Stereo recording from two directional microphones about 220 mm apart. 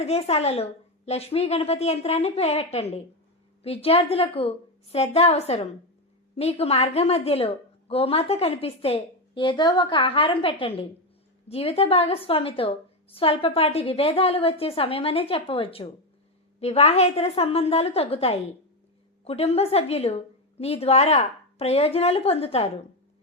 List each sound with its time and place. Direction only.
0.0 s a woman's voice: 30° left (ahead or behind)